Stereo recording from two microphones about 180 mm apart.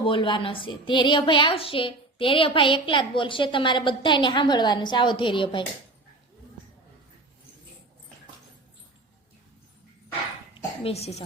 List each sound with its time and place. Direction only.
0.0 s a woman's voice: 25° left (ahead or behind)
10.8 s speech: 35° left (ahead or behind)